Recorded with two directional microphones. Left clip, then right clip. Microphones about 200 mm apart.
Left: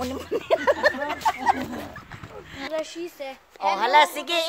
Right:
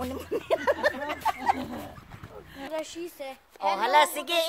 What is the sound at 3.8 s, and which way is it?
Speech, centre (ahead or behind).